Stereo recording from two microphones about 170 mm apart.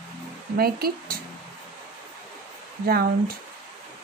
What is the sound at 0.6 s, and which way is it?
Speech, 65° right (ahead or behind).